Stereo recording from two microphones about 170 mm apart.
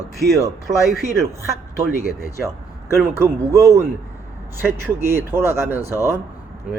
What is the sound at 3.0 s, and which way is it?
Speech, 15° right (ahead or behind).